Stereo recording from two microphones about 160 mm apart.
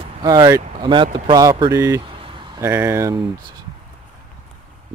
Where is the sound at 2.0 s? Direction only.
30° right (ahead or behind).